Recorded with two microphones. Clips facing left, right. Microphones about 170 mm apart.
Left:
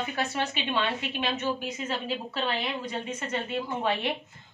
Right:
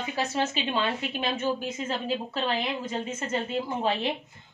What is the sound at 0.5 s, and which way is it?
Speech, 40° right (ahead or behind).